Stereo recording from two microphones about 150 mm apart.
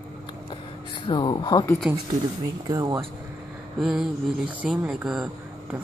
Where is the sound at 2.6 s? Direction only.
30° right (ahead or behind).